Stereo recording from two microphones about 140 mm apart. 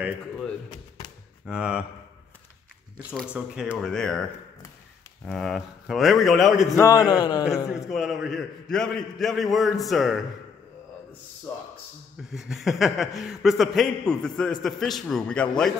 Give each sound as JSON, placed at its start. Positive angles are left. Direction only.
{"t": 1.4, "sound": "a man's voice", "side_deg": -5}
{"t": 3.3, "sound": "a man's voice", "side_deg": -5}
{"t": 3.7, "sound": "a man's voice", "side_deg": 5}
{"t": 5.2, "sound": "a man's voice", "side_deg": 5}
{"t": 6.8, "sound": "speech", "side_deg": 25}
{"t": 7.9, "sound": "a man's voice", "side_deg": 0}
{"t": 12.3, "sound": "a man's voice", "side_deg": 0}